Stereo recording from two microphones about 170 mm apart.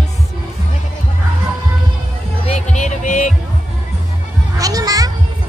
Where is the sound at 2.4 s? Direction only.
45° left (ahead or behind).